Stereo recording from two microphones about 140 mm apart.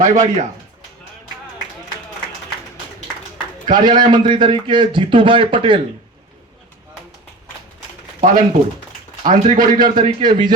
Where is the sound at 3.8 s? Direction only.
30° right (ahead or behind).